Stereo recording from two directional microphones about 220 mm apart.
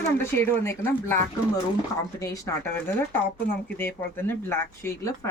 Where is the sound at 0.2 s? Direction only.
10° left (ahead or behind).